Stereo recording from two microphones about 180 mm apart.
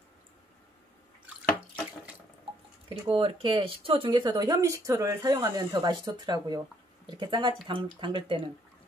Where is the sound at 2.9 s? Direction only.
30° right (ahead or behind).